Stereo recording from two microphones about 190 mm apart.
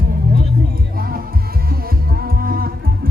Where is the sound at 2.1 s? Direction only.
50° right (ahead or behind).